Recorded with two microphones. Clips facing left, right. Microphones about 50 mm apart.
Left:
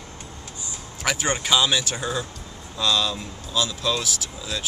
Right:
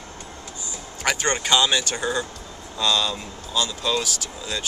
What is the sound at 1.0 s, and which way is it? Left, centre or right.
Speech, centre.